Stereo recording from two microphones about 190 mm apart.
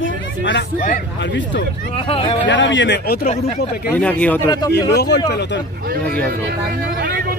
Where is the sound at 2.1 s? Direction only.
30° left (ahead or behind).